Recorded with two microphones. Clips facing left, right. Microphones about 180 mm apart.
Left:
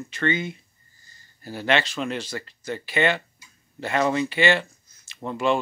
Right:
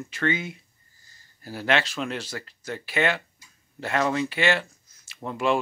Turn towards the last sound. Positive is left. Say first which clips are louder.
# left 1 dB
turn(degrees=0)  # may be behind; listen again after turning